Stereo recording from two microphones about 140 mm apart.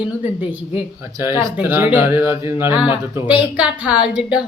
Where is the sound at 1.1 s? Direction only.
20° right (ahead or behind).